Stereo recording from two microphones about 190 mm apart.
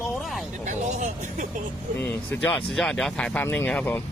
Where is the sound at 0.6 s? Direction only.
40° right (ahead or behind).